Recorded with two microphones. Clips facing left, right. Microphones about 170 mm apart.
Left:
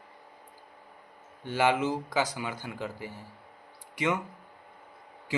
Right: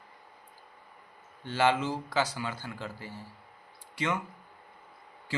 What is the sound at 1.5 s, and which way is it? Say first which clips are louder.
A man's voice: left 1 dB; 15° left (ahead or behind).